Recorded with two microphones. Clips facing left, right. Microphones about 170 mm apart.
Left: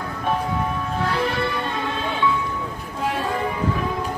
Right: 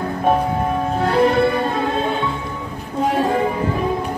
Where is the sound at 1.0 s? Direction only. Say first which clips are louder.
Right 9 dB; 50° right (ahead or behind).